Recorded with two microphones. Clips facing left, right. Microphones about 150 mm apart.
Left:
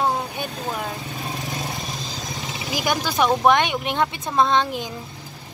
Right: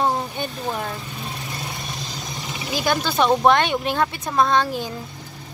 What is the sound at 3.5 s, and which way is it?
Speech, 15° left (ahead or behind).